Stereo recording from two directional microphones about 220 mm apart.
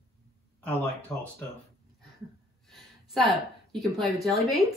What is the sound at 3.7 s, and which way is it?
Speech, centre (ahead or behind).